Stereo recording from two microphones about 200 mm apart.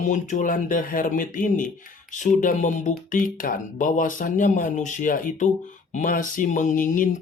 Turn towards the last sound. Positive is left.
turn(degrees=45)  # may be behind; listen again after turning